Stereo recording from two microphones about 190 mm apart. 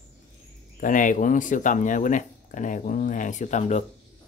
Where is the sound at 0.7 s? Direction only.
45° left (ahead or behind).